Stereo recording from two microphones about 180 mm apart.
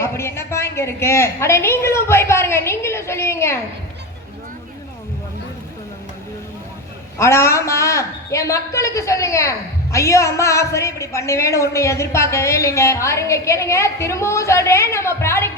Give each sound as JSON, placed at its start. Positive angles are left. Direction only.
{"t": 0.0, "sound": "a woman's voice", "side_deg": 15}
{"t": 7.2, "sound": "a woman's voice", "side_deg": 15}